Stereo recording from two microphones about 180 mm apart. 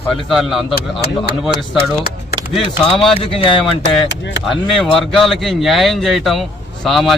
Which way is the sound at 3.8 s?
85° left.